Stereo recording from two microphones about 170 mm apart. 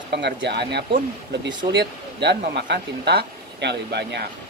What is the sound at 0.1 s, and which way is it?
Speech, 85° right.